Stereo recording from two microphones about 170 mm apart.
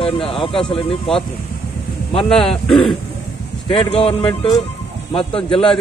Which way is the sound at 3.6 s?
30° left (ahead or behind).